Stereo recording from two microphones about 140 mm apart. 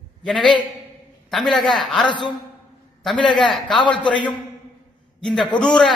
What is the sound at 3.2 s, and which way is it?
A man's voice, 35° left (ahead or behind).